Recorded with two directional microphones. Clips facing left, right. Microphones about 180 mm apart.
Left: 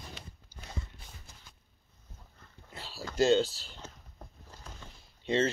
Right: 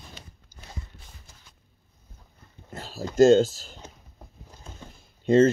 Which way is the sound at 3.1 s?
45° right (ahead or behind).